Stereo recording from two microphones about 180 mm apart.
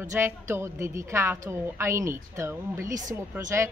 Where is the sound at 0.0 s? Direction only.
15° right (ahead or behind).